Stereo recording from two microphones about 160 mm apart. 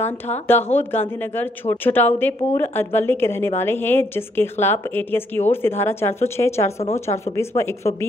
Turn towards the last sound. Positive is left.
turn(degrees=15)  # may be behind; listen again after turning